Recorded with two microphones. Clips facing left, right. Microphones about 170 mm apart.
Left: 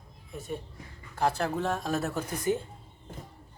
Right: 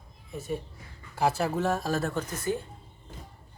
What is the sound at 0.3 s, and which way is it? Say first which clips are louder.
Speech: right 3 dB; centre (ahead or behind).